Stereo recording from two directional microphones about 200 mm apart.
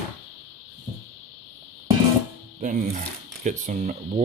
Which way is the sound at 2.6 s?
40° right (ahead or behind).